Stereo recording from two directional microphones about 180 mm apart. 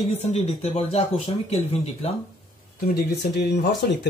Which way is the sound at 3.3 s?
70° left (ahead or behind).